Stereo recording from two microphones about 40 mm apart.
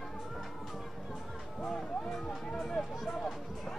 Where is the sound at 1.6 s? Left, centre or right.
Centre.